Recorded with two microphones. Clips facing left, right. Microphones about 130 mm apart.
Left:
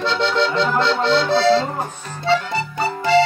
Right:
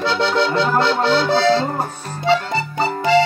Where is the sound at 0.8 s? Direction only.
10° right (ahead or behind).